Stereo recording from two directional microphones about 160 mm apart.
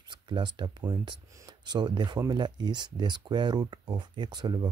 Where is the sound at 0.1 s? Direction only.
30° right (ahead or behind).